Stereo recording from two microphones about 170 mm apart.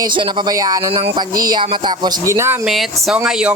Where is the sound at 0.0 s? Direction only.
25° right (ahead or behind).